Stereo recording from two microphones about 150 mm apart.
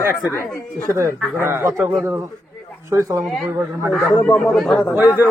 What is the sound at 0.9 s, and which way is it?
Speech, 20° right (ahead or behind).